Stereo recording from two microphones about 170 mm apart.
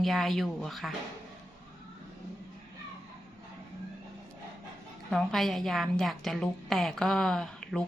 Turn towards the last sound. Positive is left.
turn(degrees=5)  # may be behind; listen again after turning